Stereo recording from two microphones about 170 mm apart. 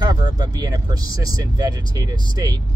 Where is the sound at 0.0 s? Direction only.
25° right (ahead or behind).